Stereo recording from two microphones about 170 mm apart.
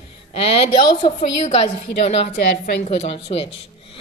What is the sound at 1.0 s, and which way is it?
Speech, 35° left (ahead or behind).